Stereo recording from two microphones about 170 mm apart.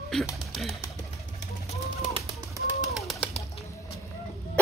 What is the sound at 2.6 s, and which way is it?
Pigeon, 20° right (ahead or behind).